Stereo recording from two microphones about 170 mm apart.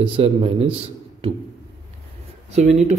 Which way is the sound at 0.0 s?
35° right (ahead or behind).